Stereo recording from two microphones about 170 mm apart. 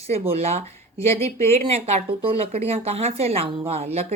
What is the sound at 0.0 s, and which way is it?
Speech, 35° right (ahead or behind).